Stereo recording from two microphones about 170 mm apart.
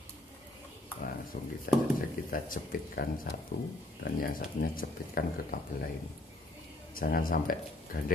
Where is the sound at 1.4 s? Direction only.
50° left (ahead or behind).